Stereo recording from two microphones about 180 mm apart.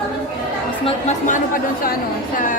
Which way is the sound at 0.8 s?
40° left (ahead or behind).